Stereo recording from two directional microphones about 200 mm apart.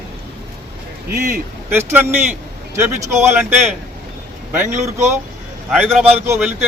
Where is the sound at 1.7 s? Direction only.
10° right (ahead or behind).